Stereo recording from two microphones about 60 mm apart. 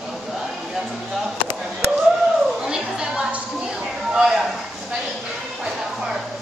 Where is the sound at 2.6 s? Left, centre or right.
Centre.